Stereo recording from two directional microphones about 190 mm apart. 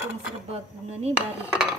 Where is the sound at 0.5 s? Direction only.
35° right (ahead or behind).